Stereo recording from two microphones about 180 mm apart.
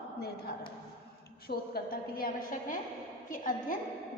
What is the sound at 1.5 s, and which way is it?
A woman's voice, 60° left (ahead or behind).